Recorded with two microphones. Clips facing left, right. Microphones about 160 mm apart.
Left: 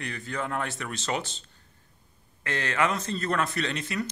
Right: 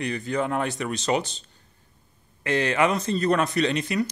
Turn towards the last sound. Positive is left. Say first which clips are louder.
# right 7 dB
turn(degrees=-15)  # may be behind; listen again after turning